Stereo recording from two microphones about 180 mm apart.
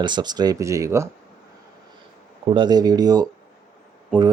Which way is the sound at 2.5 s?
25° right (ahead or behind).